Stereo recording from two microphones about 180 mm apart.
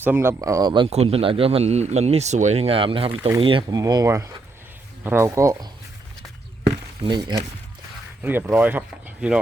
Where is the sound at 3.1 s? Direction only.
10° right (ahead or behind).